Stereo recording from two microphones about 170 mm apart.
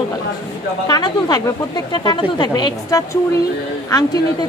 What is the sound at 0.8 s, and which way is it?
Speech, 25° left (ahead or behind).